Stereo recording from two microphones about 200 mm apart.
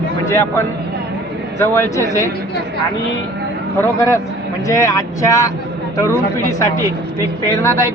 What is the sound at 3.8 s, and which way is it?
Speech, 15° left (ahead or behind).